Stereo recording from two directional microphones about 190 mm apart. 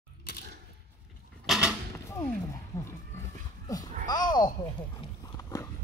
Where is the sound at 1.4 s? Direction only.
5° right (ahead or behind).